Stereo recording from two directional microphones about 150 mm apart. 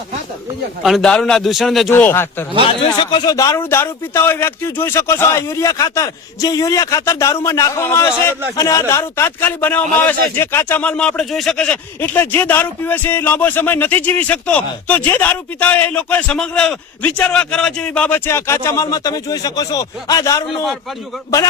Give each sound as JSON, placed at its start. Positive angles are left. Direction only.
{"t": 0.8, "sound": "a man's voice", "side_deg": 0}
{"t": 1.9, "sound": "speech", "side_deg": 15}
{"t": 2.8, "sound": "speech", "side_deg": 35}